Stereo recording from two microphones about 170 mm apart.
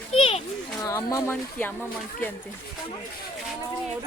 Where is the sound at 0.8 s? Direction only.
20° left (ahead or behind).